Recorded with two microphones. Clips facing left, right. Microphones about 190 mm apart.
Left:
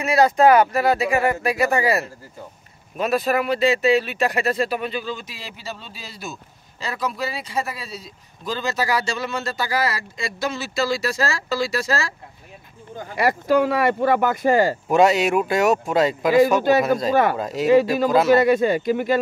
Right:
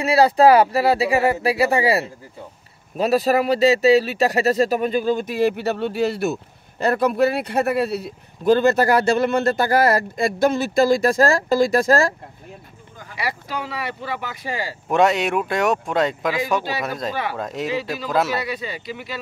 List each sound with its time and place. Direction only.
0.0 s speech: 30° right (ahead or behind); by 12.1 s 50° right (ahead or behind)
13.1 s speech: 50° left (ahead or behind)
14.9 s speech: centre (ahead or behind)
16.7 s speech: 45° left (ahead or behind)
17.4 s speech: centre (ahead or behind)
18.3 s speech: 50° left (ahead or behind)